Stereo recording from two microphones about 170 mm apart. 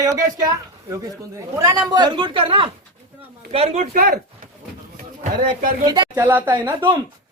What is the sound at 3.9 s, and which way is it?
Speech, 60° right (ahead or behind).